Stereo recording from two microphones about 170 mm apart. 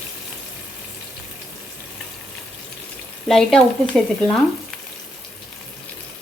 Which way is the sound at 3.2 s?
Centre (ahead or behind).